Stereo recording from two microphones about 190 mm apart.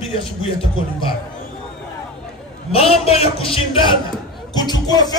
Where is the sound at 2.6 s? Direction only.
30° left (ahead or behind).